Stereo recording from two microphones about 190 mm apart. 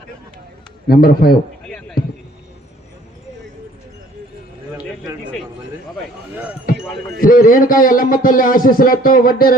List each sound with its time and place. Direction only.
0.9 s a man's voice: 55° left (ahead or behind)
1.6 s basketball bounce: 5° left (ahead or behind)
7.2 s a man's voice: 50° left (ahead or behind)